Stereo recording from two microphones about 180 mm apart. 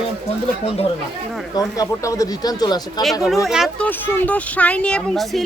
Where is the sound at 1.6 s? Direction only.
20° left (ahead or behind).